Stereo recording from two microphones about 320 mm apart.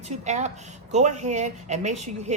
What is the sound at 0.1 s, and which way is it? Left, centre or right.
A woman's voice, right.